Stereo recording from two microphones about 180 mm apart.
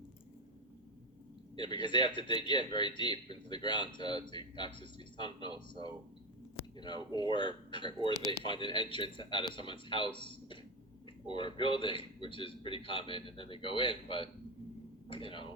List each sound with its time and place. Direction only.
1.5 s speech: 25° left (ahead or behind)
8.1 s speech: 20° right (ahead or behind)
8.4 s speech: 25° left (ahead or behind)